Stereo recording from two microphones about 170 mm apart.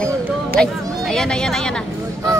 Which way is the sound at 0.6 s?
5° left (ahead or behind).